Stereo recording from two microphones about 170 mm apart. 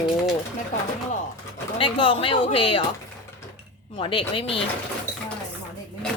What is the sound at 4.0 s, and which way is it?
Speech, 30° left (ahead or behind).